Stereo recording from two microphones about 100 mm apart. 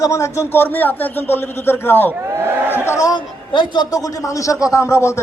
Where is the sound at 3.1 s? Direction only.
50° left (ahead or behind).